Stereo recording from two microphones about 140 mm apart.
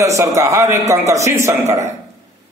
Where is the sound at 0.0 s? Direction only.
25° right (ahead or behind).